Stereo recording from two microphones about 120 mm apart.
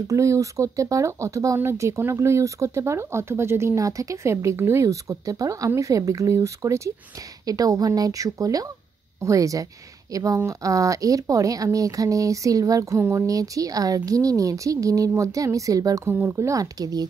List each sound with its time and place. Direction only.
0.1 s speech: 25° right (ahead or behind)